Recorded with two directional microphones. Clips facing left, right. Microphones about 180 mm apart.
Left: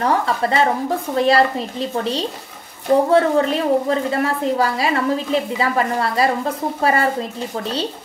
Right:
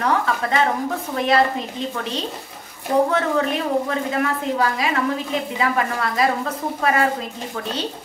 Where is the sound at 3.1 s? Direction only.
30° left (ahead or behind).